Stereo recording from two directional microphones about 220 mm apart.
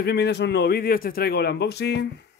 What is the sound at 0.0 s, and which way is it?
A man's voice, 50° left (ahead or behind).